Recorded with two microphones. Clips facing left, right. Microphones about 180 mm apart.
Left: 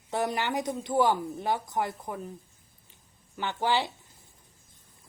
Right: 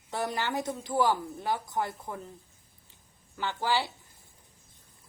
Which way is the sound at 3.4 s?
20° left (ahead or behind).